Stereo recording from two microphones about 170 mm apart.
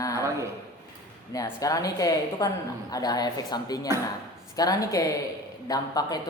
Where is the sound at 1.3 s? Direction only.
20° left (ahead or behind).